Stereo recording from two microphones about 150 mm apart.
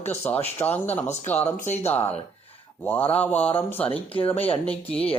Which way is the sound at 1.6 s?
50° left (ahead or behind).